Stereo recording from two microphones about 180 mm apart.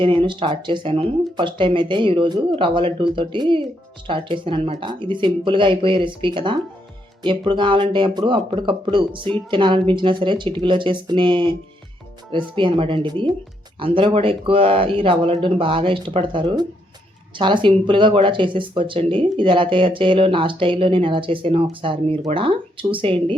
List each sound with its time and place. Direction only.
0.0 s speech: 30° right (ahead or behind)